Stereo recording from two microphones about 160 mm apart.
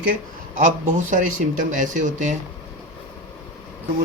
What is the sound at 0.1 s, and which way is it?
Speech, 55° right (ahead or behind).